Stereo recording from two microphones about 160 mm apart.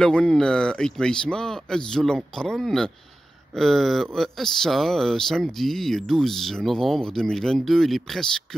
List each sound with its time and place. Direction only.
0.0 s speech: 5° left (ahead or behind)